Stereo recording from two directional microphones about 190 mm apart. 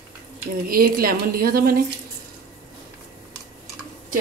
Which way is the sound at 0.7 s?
50° right (ahead or behind).